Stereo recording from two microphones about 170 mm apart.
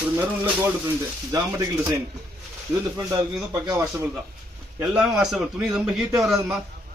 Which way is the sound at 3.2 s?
15° right (ahead or behind).